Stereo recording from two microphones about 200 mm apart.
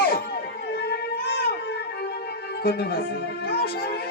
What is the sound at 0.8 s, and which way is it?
Music, 50° left (ahead or behind).